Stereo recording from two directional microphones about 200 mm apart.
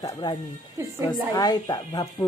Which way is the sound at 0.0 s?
20° left (ahead or behind).